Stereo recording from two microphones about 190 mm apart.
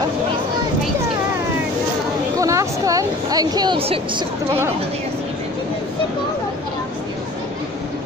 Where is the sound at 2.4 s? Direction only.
15° right (ahead or behind).